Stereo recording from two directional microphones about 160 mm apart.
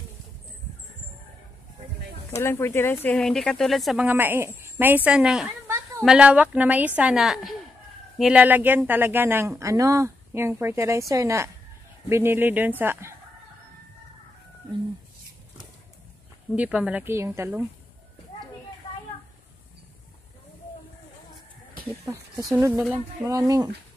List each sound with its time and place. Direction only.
2.4 s speech: 15° left (ahead or behind)
3.2 s speech: centre (ahead or behind); by 13.1 s 15° right (ahead or behind)
16.5 s speech: 5° right (ahead or behind)
22.1 s speech: 25° right (ahead or behind)